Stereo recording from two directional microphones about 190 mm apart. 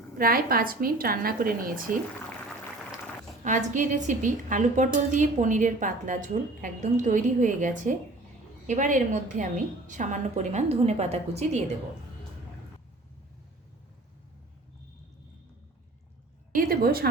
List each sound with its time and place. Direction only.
0.2 s a woman's voice: 50° right (ahead or behind)
3.4 s a woman's voice: 40° right (ahead or behind)
16.6 s a woman's voice: 50° right (ahead or behind)